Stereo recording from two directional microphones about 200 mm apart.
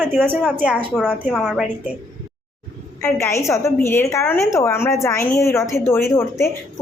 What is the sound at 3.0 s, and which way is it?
A woman's voice, 15° left (ahead or behind).